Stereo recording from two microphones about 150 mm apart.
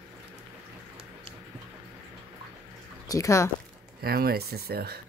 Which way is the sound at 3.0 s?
20° left (ahead or behind).